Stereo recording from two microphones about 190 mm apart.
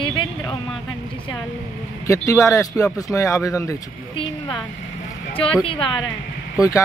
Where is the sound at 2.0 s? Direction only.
15° left (ahead or behind).